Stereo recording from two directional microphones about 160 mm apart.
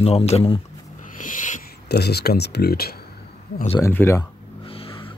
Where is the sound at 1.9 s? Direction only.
90° left; by 3.0 s 75° left (ahead or behind).